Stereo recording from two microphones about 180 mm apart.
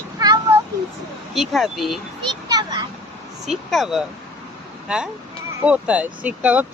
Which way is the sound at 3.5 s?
Centre (ahead or behind).